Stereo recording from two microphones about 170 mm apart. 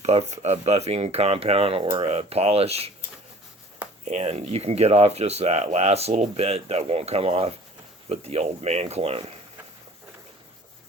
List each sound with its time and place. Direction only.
0.0 s speech: 40° right (ahead or behind)
4.0 s speech: 40° right (ahead or behind)